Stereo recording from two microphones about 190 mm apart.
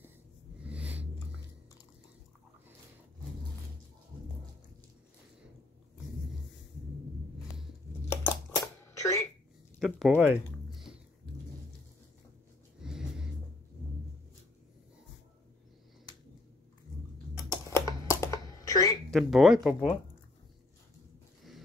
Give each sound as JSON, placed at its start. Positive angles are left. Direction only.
{"t": 0.6, "sound": "snort", "side_deg": -5}
{"t": 8.1, "sound": "cash register", "side_deg": 15}
{"t": 9.8, "sound": "speech", "side_deg": 0}
{"t": 10.1, "sound": "a sound", "side_deg": -5}
{"t": 12.8, "sound": "music", "side_deg": -5}
{"t": 17.4, "sound": "computer keyboard", "side_deg": 15}
{"t": 19.0, "sound": "speech", "side_deg": 0}